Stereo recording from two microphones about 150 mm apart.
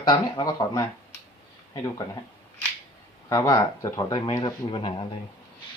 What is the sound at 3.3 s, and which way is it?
Speech, 25° left (ahead or behind).